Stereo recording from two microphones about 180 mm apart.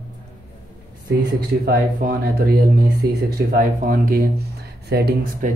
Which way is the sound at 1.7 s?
55° right (ahead or behind).